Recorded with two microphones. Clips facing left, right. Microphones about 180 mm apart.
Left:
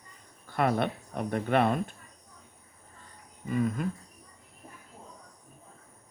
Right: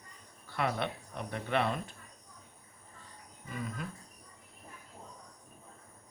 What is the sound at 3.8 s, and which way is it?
Speech, 50° left (ahead or behind).